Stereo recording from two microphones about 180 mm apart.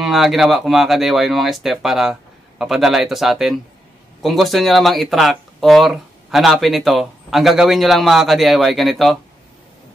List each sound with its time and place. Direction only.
0.0 s speech: centre (ahead or behind)